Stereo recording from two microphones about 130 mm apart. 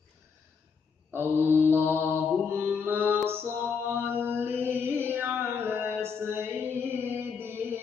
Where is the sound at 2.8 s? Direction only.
15° right (ahead or behind).